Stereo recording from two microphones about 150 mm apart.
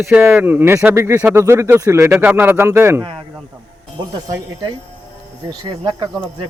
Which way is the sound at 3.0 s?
35° right (ahead or behind).